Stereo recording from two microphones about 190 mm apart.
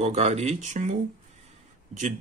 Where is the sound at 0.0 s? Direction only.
35° right (ahead or behind).